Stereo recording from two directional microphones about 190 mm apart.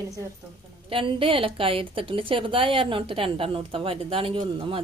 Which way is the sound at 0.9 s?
30° right (ahead or behind).